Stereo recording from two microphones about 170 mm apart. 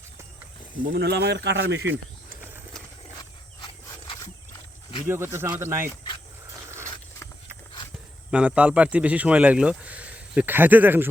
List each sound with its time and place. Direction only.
0.9 s a man's voice: 70° right (ahead or behind); by 1.8 s 90° right
5.0 s speech: 15° right (ahead or behind)
8.3 s speech: 10° right (ahead or behind)